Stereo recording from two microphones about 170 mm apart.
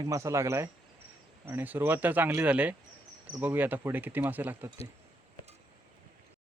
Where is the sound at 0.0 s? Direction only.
20° right (ahead or behind).